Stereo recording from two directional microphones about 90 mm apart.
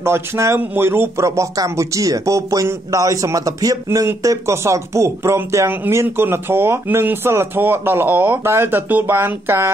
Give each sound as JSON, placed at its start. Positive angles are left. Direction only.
{"t": 0.0, "sound": "speech", "side_deg": -30}
{"t": 1.2, "sound": "speech", "side_deg": -35}